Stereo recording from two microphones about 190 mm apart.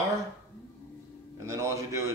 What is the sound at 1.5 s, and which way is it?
Speech, 15° right (ahead or behind).